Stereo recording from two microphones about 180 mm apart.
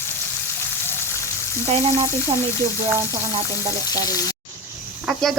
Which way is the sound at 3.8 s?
20° left (ahead or behind).